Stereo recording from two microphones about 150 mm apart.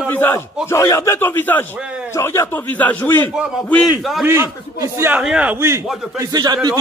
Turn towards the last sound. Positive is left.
turn(degrees=-25)  # may be behind; listen again after turning